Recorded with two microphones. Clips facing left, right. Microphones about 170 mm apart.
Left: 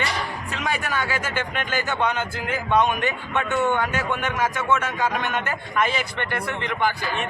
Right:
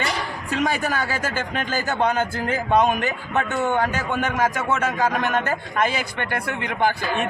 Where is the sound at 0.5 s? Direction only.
40° right (ahead or behind).